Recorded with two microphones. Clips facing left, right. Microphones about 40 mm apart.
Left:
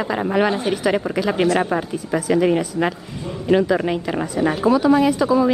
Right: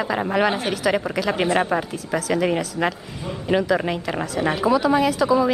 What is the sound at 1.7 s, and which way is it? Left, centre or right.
A man's voice, centre.